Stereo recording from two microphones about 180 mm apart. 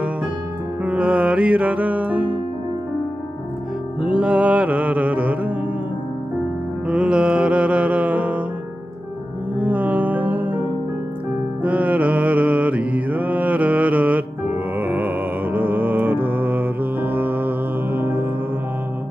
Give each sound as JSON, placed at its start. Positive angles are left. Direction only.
{"t": 0.8, "sound": "music", "side_deg": -5}
{"t": 4.0, "sound": "music", "side_deg": -5}
{"t": 6.9, "sound": "music", "side_deg": -5}
{"t": 9.6, "sound": "music", "side_deg": -10}
{"t": 11.6, "sound": "mantra", "side_deg": -10}